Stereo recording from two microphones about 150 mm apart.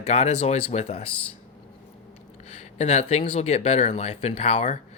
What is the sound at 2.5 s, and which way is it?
Speech, 45° left (ahead or behind).